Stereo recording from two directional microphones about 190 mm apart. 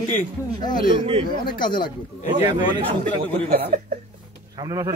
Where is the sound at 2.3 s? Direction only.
20° right (ahead or behind).